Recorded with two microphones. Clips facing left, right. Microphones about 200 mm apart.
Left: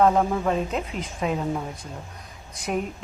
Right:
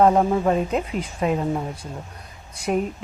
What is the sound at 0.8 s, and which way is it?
Speech, centre (ahead or behind).